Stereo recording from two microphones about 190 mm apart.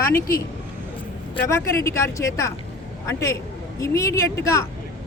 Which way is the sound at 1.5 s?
15° left (ahead or behind).